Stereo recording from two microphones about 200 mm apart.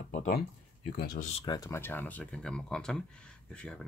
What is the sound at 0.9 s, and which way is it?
Speech, 55° left (ahead or behind).